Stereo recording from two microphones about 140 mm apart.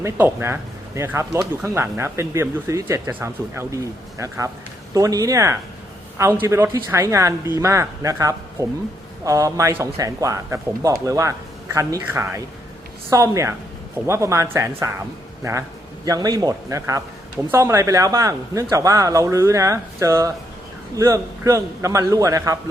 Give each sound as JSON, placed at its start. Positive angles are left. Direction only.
{"t": 0.0, "sound": "a man's voice", "side_deg": -15}
{"t": 16.0, "sound": "a man's voice", "side_deg": -25}